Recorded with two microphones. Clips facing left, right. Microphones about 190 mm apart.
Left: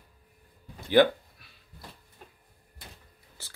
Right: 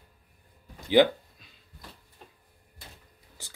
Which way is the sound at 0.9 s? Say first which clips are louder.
Even; 15° right (ahead or behind).